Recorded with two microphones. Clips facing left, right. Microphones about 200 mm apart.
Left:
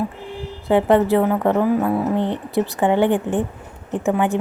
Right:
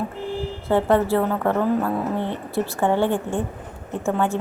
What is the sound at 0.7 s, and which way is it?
A woman's voice, 15° left (ahead or behind).